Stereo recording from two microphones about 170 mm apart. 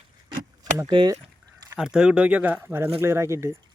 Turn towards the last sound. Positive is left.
turn(degrees=-15)  # may be behind; listen again after turning